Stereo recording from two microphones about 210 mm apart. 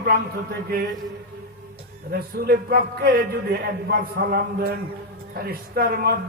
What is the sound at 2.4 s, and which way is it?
A man's voice, 45° right (ahead or behind).